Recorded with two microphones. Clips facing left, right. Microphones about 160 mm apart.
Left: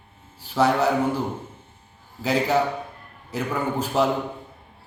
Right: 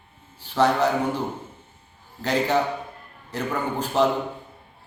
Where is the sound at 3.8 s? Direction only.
5° left (ahead or behind).